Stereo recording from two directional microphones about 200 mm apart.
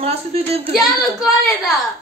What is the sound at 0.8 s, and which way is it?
Speech, centre (ahead or behind).